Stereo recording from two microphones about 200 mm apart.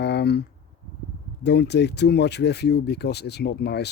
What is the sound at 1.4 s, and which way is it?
Speech, 55° left (ahead or behind).